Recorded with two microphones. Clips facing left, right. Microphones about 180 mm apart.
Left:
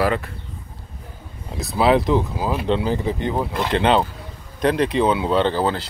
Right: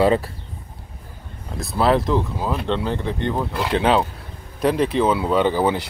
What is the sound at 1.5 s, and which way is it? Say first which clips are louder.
Speech: left 1 dB; centre (ahead or behind).